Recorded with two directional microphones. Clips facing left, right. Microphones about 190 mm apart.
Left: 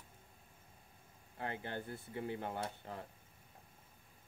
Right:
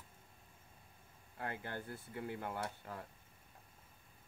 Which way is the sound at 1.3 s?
25° left (ahead or behind).